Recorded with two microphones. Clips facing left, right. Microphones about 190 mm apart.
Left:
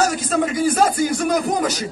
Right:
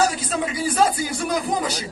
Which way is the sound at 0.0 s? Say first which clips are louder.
Left 3 dB; 50° left (ahead or behind).